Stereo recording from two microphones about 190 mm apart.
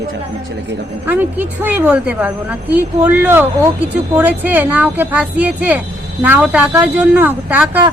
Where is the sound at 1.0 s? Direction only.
10° right (ahead or behind).